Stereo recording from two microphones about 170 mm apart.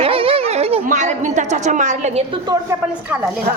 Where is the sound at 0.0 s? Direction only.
35° right (ahead or behind).